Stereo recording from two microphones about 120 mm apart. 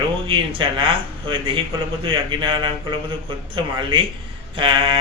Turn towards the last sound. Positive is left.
turn(degrees=-45)  # may be behind; listen again after turning